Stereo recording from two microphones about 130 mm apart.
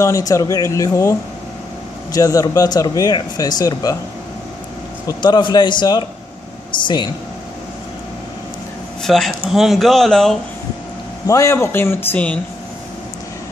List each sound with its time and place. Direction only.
0.0 s speech: 25° left (ahead or behind)
2.1 s speech: 30° left (ahead or behind)
5.0 s a man's voice: 35° left (ahead or behind)
9.0 s speech: centre (ahead or behind)
11.2 s a man's voice: 25° left (ahead or behind)